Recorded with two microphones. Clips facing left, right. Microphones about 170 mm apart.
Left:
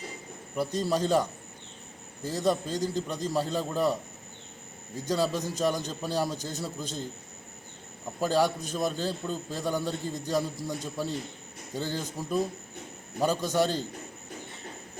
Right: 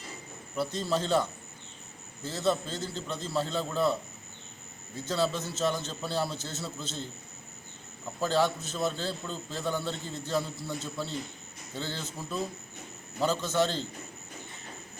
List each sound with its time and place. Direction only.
0.5 s a man's voice: 10° left (ahead or behind)
4.9 s a man's voice: 15° left (ahead or behind)
8.2 s a man's voice: 15° left (ahead or behind)